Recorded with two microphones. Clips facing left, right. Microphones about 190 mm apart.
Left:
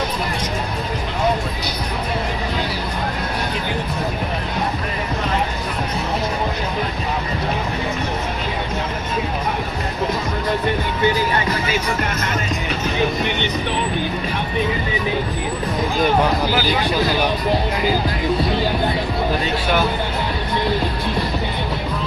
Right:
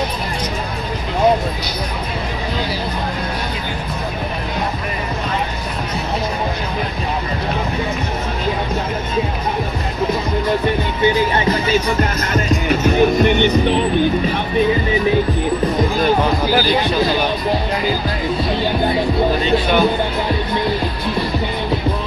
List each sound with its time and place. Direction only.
11.3 s music: 30° right (ahead or behind)
12.9 s music: 50° right (ahead or behind)
19.4 s music: 5° left (ahead or behind)